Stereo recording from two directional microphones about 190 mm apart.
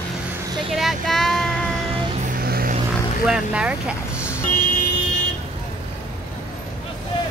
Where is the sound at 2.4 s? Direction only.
50° right (ahead or behind).